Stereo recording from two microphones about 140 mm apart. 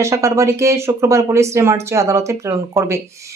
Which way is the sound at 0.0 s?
20° right (ahead or behind).